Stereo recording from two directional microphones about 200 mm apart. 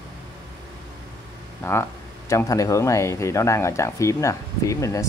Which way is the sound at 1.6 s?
10° left (ahead or behind).